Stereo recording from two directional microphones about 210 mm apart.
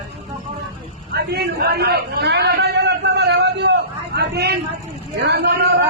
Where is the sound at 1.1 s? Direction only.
50° right (ahead or behind).